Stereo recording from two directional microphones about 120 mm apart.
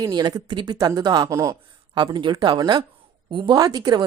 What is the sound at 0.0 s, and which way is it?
Speech, 35° right (ahead or behind).